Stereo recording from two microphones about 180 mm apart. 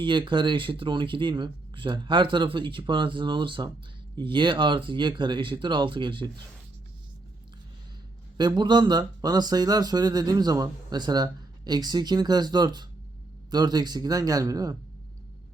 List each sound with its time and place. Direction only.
0.0 s speech: 25° right (ahead or behind)
8.4 s speech: 25° right (ahead or behind)